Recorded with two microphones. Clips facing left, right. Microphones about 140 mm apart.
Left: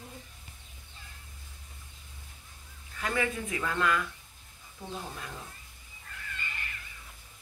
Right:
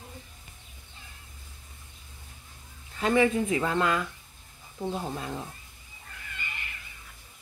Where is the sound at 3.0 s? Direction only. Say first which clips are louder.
Right 9 dB; 25° right (ahead or behind).